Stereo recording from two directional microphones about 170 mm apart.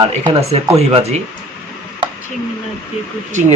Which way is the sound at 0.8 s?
40° right (ahead or behind).